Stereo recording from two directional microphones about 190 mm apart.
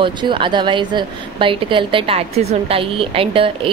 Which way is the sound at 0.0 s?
25° right (ahead or behind).